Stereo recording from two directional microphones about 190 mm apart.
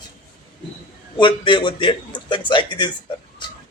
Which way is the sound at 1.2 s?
25° left (ahead or behind).